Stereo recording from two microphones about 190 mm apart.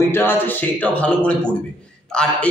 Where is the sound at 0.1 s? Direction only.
10° left (ahead or behind).